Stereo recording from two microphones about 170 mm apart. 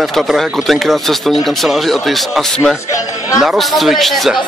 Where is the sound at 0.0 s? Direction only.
Centre (ahead or behind).